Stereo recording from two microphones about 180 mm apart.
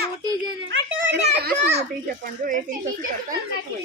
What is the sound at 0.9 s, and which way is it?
Children playing, 70° right (ahead or behind).